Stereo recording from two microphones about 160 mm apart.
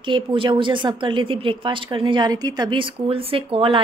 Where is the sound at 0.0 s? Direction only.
30° right (ahead or behind).